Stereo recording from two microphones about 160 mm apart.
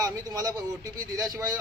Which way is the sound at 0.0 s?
25° right (ahead or behind).